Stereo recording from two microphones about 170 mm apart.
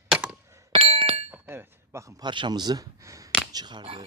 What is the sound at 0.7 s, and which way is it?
Chink, 35° right (ahead or behind).